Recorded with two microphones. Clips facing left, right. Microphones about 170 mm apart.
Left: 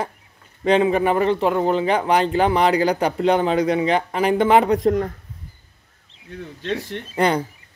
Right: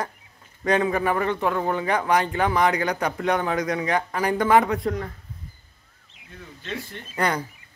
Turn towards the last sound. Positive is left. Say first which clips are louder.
# left 6 dB
turn(degrees=25)  # may be behind; listen again after turning